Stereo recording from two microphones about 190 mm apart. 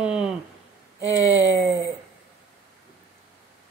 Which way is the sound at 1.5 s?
10° right (ahead or behind).